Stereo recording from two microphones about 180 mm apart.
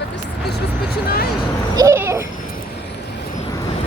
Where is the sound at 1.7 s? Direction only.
15° right (ahead or behind).